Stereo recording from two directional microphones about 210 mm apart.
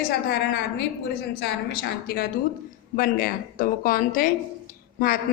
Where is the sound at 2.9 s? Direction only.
40° left (ahead or behind).